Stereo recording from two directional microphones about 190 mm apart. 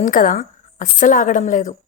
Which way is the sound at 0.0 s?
45° left (ahead or behind).